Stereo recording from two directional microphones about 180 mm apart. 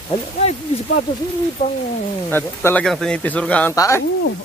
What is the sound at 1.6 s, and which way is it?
Speech, 40° left (ahead or behind).